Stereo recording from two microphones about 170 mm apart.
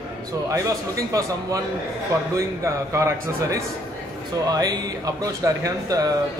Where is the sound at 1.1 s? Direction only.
20° right (ahead or behind).